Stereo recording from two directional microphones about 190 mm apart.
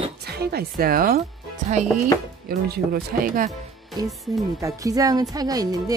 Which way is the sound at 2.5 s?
55° right (ahead or behind).